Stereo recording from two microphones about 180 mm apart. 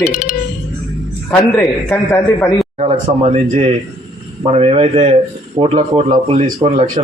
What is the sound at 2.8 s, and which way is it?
Speech, 35° right (ahead or behind).